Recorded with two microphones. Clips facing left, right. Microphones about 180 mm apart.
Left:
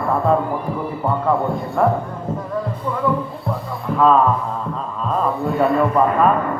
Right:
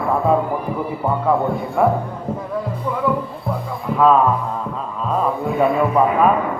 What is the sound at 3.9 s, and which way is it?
Speech, 5° right (ahead or behind).